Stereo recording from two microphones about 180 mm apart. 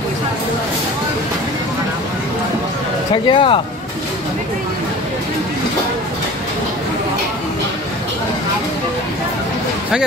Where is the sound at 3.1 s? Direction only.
25° left (ahead or behind).